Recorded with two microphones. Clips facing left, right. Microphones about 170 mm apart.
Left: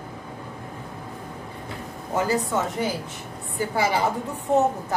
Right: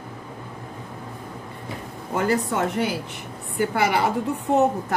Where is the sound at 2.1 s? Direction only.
60° right (ahead or behind).